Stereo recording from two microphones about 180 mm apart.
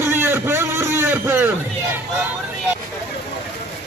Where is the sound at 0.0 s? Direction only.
10° right (ahead or behind).